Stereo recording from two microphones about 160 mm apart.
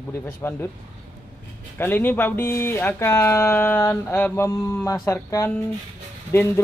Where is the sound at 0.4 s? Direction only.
15° left (ahead or behind).